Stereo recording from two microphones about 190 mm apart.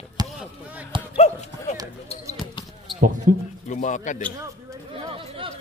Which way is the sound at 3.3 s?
45° right (ahead or behind).